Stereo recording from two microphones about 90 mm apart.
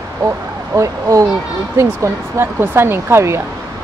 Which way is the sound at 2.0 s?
30° right (ahead or behind).